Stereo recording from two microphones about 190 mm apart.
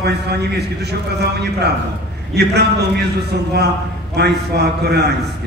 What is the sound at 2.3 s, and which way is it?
Speech, 60° right (ahead or behind).